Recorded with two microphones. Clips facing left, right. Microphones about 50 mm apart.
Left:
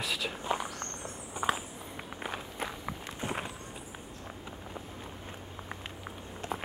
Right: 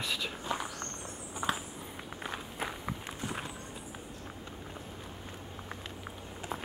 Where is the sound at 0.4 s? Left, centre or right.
Centre.